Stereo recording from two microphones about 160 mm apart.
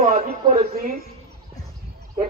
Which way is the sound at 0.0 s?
60° right (ahead or behind).